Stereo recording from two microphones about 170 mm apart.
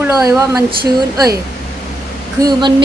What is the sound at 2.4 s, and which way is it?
Speech, 25° right (ahead or behind).